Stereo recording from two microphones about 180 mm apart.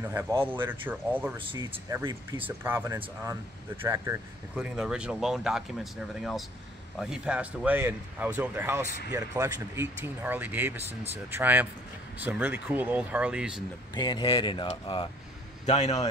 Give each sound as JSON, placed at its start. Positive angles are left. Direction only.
{"t": 0.0, "sound": "speech", "side_deg": -10}
{"t": 1.5, "sound": "speech", "side_deg": -20}
{"t": 4.6, "sound": "speech", "side_deg": -5}
{"t": 13.9, "sound": "a man's voice", "side_deg": 25}